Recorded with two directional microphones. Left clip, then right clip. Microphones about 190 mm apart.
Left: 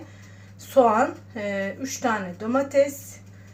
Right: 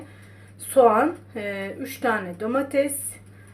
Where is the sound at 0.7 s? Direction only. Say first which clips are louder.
Right 1 dB; 30° right (ahead or behind).